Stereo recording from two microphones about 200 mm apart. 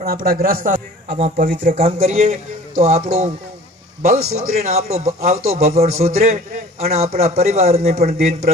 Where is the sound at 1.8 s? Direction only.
30° right (ahead or behind).